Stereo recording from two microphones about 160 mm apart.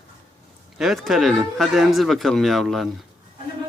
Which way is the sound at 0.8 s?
Centre (ahead or behind).